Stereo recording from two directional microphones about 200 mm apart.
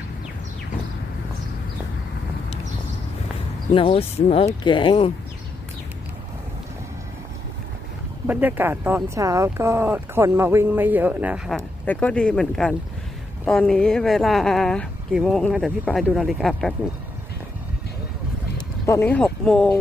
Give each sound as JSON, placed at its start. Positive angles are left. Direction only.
{"t": 3.7, "sound": "speech", "side_deg": 30}
{"t": 8.3, "sound": "speech", "side_deg": -10}
{"t": 18.9, "sound": "speech", "side_deg": 10}